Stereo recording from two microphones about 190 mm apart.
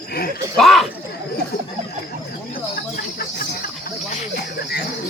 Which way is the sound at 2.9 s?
55° left (ahead or behind).